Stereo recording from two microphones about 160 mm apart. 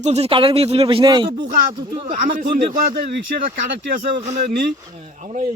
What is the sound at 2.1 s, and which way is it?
Speech, 55° right (ahead or behind).